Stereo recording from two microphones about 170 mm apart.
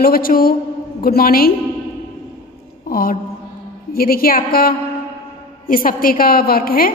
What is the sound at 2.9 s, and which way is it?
A woman's voice, 60° left (ahead or behind).